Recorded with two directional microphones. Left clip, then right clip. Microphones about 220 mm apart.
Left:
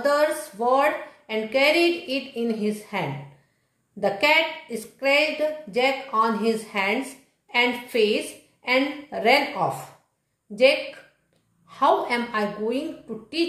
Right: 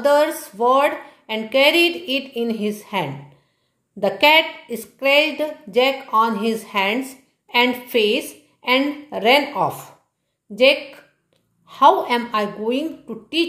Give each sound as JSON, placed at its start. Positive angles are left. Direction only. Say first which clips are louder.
{"t": 0.0, "sound": "speech", "louder": "right 5 dB", "side_deg": -40}